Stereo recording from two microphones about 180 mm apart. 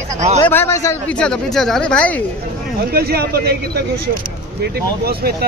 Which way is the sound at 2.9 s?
60° right (ahead or behind).